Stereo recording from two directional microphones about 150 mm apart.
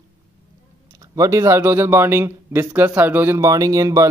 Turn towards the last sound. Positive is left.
turn(degrees=-20)  # may be behind; listen again after turning